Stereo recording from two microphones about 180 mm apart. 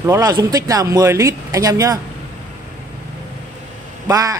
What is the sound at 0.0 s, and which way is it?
Speech, 20° right (ahead or behind).